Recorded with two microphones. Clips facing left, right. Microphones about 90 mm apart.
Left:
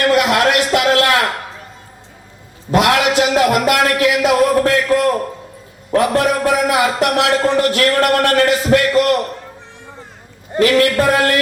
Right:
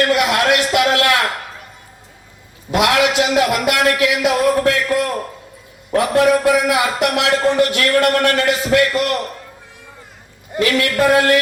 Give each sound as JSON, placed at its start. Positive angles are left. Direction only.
{"t": 0.1, "sound": "a sound", "side_deg": 40}
{"t": 3.1, "sound": "a man's voice", "side_deg": 35}
{"t": 10.5, "sound": "a man's voice", "side_deg": 40}